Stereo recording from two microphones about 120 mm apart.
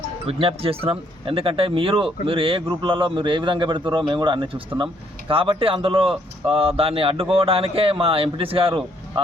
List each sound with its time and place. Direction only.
0.3 s speech: 50° right (ahead or behind)